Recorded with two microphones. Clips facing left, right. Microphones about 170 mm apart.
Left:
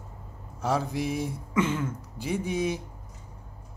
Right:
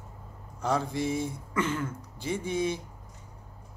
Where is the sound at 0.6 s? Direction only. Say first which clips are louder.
Left 1 dB; 5° left (ahead or behind).